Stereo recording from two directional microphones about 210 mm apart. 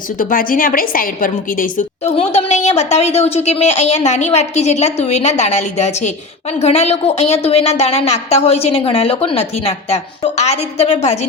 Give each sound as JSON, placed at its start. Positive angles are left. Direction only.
{"t": 0.2, "sound": "a woman's voice", "side_deg": 40}